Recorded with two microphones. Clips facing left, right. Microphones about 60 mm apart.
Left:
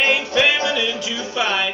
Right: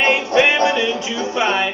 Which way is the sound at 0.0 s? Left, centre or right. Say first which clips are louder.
Right 3 dB; right.